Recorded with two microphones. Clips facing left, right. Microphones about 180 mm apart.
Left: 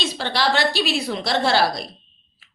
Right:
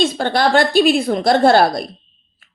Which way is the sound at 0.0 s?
50° right (ahead or behind).